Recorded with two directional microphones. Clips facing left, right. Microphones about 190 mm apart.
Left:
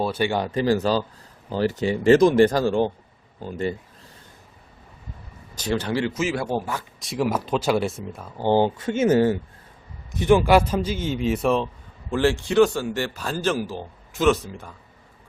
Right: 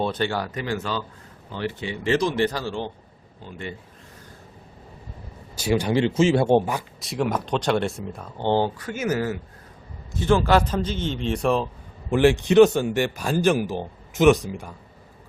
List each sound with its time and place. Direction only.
0.0 s a man's voice: 10° left (ahead or behind)
0.6 s speech: 35° left (ahead or behind)
5.5 s speech: 10° right (ahead or behind); by 6.7 s 25° right (ahead or behind)
7.0 s speech: centre (ahead or behind)
8.8 s speech: 25° left (ahead or behind)
10.1 s a man's voice: 15° left (ahead or behind); by 11.7 s centre (ahead or behind)
12.1 s speech: 20° right (ahead or behind)